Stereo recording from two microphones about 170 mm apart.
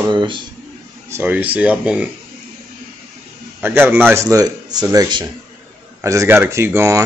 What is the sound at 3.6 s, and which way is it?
A man's voice, 10° right (ahead or behind).